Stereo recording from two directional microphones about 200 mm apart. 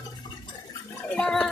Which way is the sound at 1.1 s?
5° left (ahead or behind).